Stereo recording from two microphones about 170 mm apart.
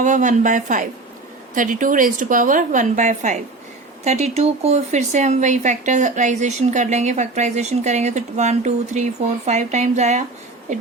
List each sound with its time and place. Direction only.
0.0 s a woman's voice: 45° right (ahead or behind)